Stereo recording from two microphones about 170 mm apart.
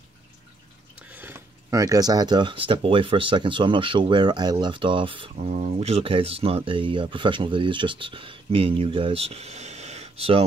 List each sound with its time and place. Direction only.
1.0 s speech: 10° right (ahead or behind); by 5.5 s 30° right (ahead or behind)
5.5 s speech: 45° right (ahead or behind)